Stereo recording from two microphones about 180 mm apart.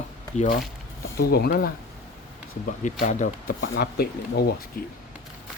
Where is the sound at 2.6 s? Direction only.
45° left (ahead or behind).